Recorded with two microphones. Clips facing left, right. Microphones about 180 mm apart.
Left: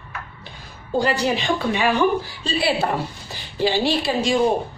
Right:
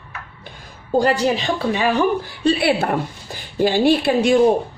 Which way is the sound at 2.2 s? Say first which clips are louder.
Right 5 dB; 60° right (ahead or behind).